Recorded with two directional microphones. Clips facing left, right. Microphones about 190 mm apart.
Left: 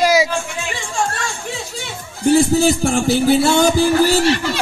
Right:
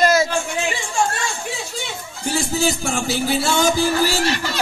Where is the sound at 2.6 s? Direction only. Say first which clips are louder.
Left 6 dB; 50° left (ahead or behind).